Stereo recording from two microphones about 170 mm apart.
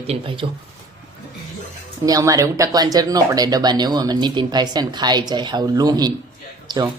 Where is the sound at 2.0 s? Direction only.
20° right (ahead or behind).